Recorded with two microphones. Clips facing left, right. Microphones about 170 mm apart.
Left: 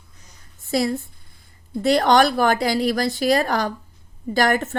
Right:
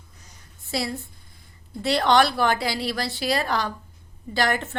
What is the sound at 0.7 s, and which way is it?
A woman's voice, 45° left (ahead or behind).